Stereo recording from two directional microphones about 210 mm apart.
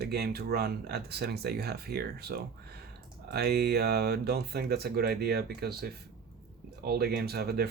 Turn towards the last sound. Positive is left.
turn(degrees=-50)  # may be behind; listen again after turning